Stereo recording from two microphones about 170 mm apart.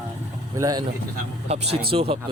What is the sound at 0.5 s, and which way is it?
Speech, 20° right (ahead or behind).